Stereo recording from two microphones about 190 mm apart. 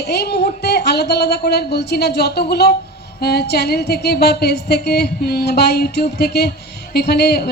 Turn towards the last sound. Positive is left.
turn(degrees=55)  # may be behind; listen again after turning